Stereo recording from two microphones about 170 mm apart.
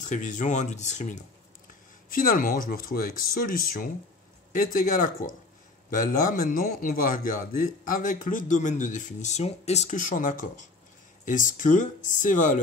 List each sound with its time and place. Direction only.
0.0 s speech: 45° left (ahead or behind)
2.0 s speech: 55° left (ahead or behind)